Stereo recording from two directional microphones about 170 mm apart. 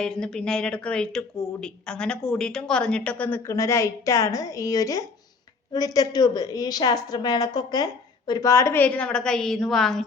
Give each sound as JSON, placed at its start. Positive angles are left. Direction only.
{"t": 0.0, "sound": "a woman's voice", "side_deg": 5}